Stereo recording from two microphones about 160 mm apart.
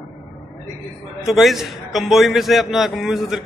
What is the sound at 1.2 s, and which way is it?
A man's voice, centre (ahead or behind).